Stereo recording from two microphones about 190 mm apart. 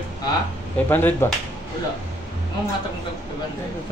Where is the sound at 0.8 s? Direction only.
10° left (ahead or behind).